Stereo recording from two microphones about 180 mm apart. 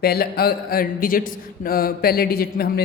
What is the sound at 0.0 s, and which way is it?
A man's voice, 60° left (ahead or behind).